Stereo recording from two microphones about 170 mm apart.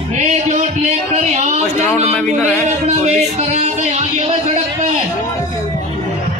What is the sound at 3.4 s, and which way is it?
Speech, 40° right (ahead or behind).